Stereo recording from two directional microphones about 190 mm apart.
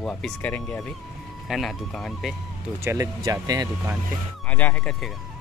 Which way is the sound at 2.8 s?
15° right (ahead or behind).